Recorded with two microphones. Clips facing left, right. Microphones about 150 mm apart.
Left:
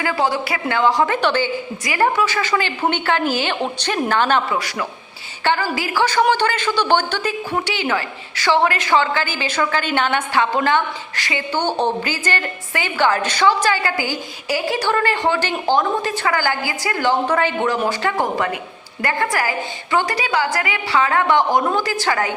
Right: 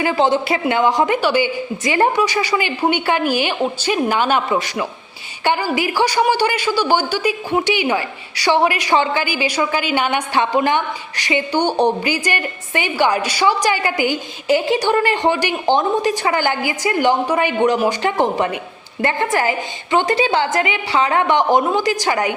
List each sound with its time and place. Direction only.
0.0 s a woman's voice: 20° right (ahead or behind)
1.8 s a woman's voice: 20° right (ahead or behind)